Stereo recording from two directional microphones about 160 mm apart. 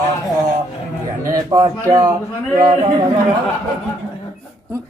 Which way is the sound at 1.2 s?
20° right (ahead or behind).